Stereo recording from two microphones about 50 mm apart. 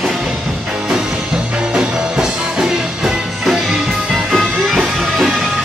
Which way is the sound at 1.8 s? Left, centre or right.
Centre.